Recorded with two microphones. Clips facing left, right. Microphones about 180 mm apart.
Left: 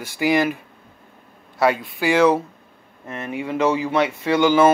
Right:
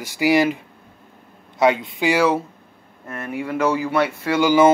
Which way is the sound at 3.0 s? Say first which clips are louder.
Even; 20° left (ahead or behind).